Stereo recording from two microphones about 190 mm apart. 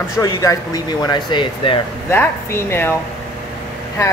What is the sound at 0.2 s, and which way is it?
Speech, 20° left (ahead or behind).